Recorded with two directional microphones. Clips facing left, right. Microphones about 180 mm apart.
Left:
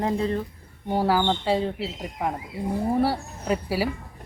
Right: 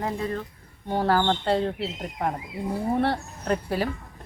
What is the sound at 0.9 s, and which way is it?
A woman's voice, 10° left (ahead or behind).